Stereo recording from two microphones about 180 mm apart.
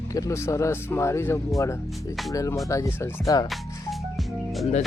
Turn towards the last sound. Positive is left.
turn(degrees=0)  # may be behind; listen again after turning